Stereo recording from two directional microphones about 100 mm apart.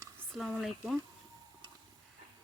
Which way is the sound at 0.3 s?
Centre (ahead or behind).